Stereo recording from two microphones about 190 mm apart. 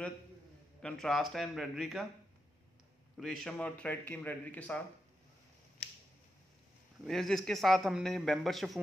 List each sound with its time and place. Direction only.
0.8 s a man's voice: centre (ahead or behind)
3.2 s a man's voice: centre (ahead or behind)
7.1 s a man's voice: centre (ahead or behind)